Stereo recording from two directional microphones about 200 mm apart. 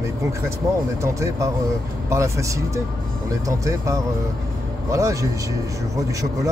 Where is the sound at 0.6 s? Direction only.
15° right (ahead or behind).